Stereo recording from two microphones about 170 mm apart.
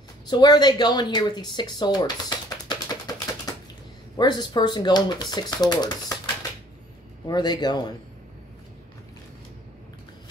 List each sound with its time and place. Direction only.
0.3 s speech: 25° left (ahead or behind)
4.2 s speech: 25° left (ahead or behind)
7.2 s speech: 25° left (ahead or behind)